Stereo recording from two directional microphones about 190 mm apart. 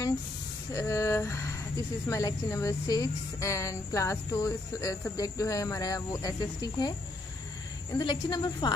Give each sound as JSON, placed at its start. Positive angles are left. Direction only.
{"t": 0.7, "sound": "speech", "side_deg": 15}
{"t": 7.9, "sound": "a woman's voice", "side_deg": 20}